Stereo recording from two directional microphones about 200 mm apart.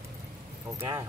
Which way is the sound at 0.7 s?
15° right (ahead or behind).